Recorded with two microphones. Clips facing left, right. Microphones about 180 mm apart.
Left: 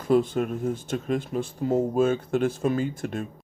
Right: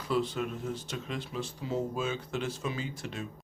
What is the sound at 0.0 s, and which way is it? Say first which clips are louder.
Speech: left 9 dB; 50° left (ahead or behind).